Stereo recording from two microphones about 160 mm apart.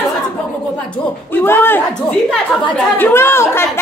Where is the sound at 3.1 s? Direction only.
15° left (ahead or behind).